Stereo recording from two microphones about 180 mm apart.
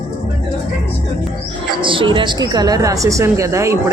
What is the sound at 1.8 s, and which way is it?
A woman's voice, 30° right (ahead or behind).